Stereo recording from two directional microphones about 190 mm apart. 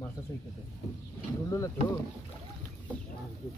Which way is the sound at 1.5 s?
15° left (ahead or behind).